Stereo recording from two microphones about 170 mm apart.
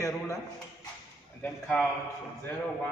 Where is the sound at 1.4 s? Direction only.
5° left (ahead or behind).